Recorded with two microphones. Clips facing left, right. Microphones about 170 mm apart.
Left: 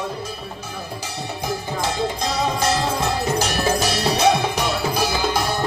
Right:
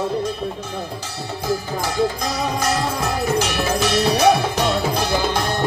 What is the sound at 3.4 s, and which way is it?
Music, 40° left (ahead or behind).